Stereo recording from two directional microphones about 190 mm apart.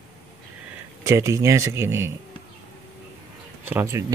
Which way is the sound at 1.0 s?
15° right (ahead or behind).